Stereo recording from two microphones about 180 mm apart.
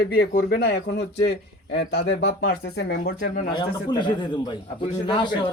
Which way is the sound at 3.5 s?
25° left (ahead or behind).